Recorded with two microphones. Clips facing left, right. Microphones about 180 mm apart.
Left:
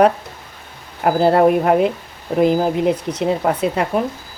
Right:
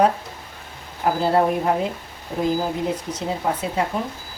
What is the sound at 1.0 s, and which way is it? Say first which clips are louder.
Speech: left 6 dB; 65° left (ahead or behind).